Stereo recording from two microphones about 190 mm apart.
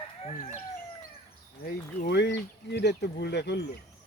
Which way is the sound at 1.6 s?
60° left (ahead or behind).